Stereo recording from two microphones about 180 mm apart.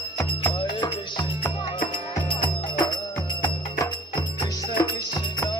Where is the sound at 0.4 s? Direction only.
25° left (ahead or behind).